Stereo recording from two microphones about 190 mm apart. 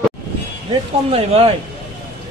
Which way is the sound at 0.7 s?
30° right (ahead or behind).